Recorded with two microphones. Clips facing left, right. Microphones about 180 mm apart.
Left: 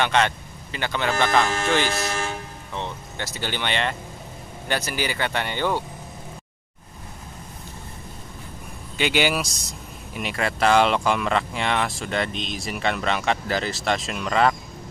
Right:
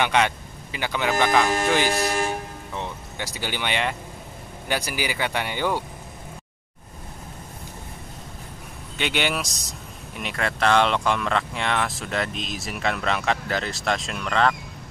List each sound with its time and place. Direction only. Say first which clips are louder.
0.0 s speech: even; 10° right (ahead or behind)
8.9 s speech: left 3 dB; centre (ahead or behind)